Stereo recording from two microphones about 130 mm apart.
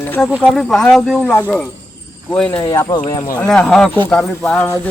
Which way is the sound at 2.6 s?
25° left (ahead or behind).